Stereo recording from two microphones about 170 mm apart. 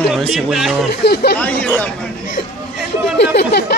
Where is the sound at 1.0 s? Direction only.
75° left (ahead or behind).